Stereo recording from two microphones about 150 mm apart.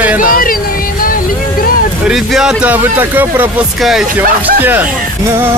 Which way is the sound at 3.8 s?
Centre (ahead or behind).